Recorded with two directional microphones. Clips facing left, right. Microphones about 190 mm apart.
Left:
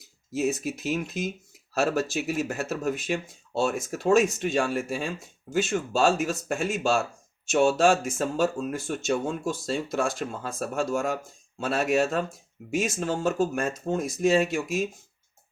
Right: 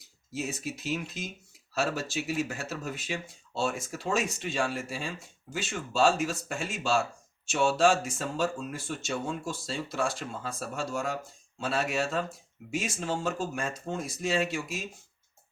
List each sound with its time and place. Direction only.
0.3 s speech: 50° left (ahead or behind)